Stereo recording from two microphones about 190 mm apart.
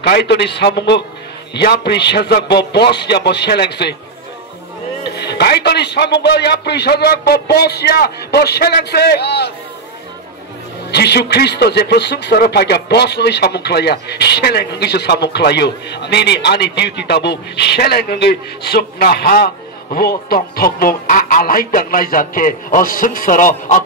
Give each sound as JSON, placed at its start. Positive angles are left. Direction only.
{"t": 0.0, "sound": "a man's voice", "side_deg": 60}
{"t": 5.1, "sound": "a man's voice", "side_deg": 60}
{"t": 10.9, "sound": "a man's voice", "side_deg": 60}